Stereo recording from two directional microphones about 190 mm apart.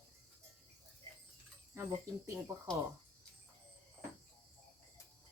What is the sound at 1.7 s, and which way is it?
Speech, 15° right (ahead or behind).